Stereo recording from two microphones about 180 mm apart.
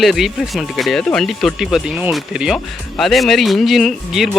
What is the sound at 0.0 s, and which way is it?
Speech, centre (ahead or behind).